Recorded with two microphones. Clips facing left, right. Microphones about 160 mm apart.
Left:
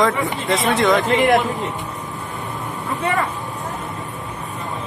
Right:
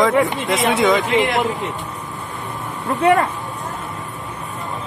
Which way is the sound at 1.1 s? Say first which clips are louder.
Left 2 dB; 45° left (ahead or behind).